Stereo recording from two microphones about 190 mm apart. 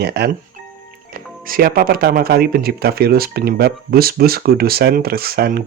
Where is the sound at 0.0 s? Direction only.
60° right (ahead or behind).